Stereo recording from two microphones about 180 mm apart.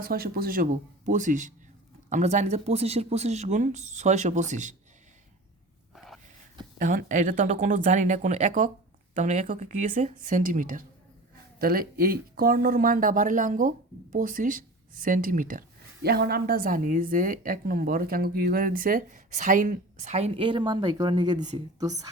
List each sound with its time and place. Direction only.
0.0 s a woman's voice: 55° right (ahead or behind)
5.9 s dog: centre (ahead or behind)
6.7 s a woman's voice: 45° right (ahead or behind)
16.0 s a woman's voice: 60° right (ahead or behind); by 22.1 s 20° right (ahead or behind)